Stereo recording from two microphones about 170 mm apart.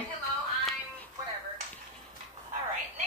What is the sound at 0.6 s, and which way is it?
Music, centre (ahead or behind).